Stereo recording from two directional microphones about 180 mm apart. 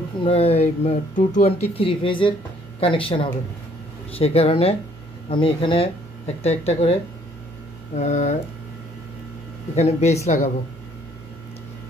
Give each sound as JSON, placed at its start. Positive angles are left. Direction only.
{"t": 0.2, "sound": "speech", "side_deg": 35}
{"t": 1.8, "sound": "speech", "side_deg": 30}
{"t": 9.8, "sound": "speech", "side_deg": 35}